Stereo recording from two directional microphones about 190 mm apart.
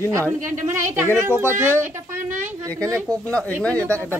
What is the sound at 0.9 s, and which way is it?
A woman's voice, 10° right (ahead or behind).